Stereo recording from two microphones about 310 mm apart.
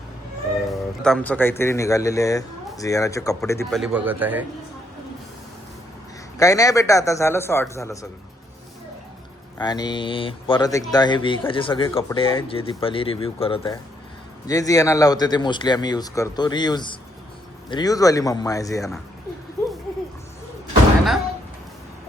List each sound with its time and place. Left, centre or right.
0.7 s speech: centre
6.3 s speech: centre
9.6 s speech: centre